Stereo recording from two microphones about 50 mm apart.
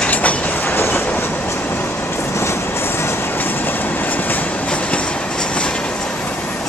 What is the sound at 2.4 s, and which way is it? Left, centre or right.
Train, left.